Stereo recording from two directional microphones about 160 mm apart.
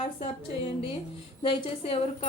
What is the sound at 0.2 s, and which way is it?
Speech, 35° left (ahead or behind).